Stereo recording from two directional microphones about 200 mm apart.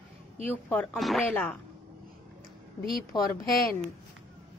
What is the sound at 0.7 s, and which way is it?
Speech, 5° left (ahead or behind).